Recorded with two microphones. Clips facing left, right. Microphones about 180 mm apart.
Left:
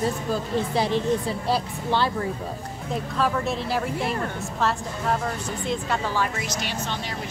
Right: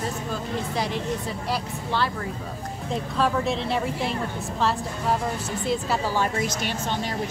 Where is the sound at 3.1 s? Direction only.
Centre (ahead or behind).